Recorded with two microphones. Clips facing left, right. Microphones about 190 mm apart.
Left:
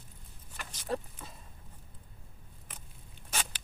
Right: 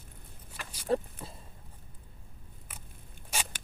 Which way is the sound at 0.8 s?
30° right (ahead or behind).